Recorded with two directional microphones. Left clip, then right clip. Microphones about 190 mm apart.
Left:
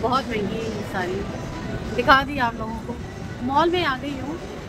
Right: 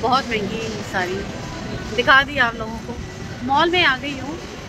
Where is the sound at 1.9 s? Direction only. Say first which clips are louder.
Right 3 dB; 5° left (ahead or behind).